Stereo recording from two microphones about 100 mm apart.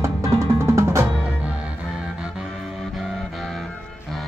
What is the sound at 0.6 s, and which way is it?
Drum, 25° right (ahead or behind).